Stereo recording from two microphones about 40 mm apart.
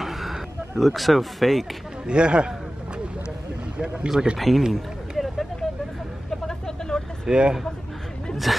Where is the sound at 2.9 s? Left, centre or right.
Right.